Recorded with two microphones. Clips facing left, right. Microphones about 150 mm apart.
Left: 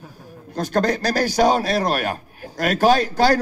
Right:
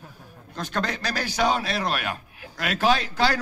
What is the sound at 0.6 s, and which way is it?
A man's voice, 40° left (ahead or behind).